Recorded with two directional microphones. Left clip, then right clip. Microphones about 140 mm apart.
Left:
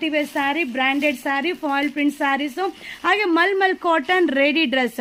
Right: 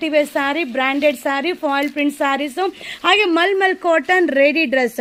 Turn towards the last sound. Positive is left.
turn(degrees=-15)  # may be behind; listen again after turning